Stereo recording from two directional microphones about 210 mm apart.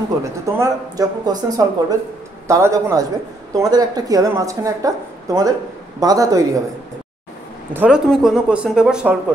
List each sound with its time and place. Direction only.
0.2 s a woman's voice: 15° right (ahead or behind)
7.7 s speech: 5° right (ahead or behind)